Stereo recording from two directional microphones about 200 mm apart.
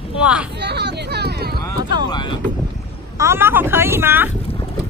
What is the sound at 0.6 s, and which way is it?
Hubbub, 55° right (ahead or behind).